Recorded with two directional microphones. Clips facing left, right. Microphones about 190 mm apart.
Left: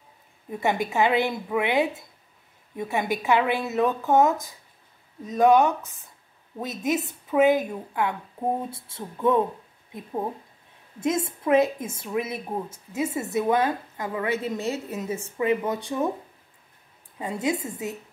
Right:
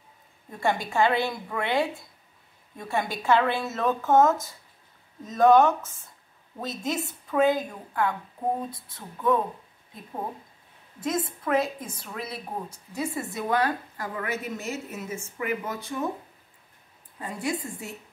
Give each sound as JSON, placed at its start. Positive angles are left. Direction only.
{"t": 0.5, "sound": "a woman's voice", "side_deg": 20}
{"t": 11.0, "sound": "a woman's voice", "side_deg": 25}
{"t": 17.2, "sound": "a woman's voice", "side_deg": 20}